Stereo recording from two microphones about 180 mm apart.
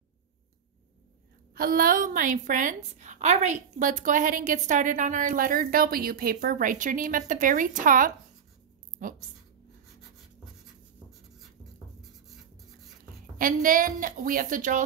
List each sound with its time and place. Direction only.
1.5 s a woman's voice: 50° right (ahead or behind)
13.4 s a woman's voice: 50° right (ahead or behind)